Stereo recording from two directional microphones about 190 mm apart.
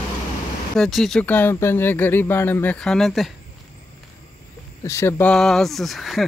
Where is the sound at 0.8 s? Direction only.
Centre (ahead or behind).